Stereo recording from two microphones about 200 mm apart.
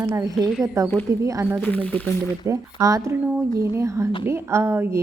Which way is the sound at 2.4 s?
15° right (ahead or behind).